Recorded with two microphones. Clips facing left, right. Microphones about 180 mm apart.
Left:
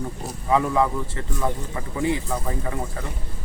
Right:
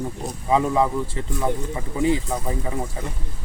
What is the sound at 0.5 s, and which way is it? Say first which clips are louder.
Speech: right 1 dB; 20° right (ahead or behind).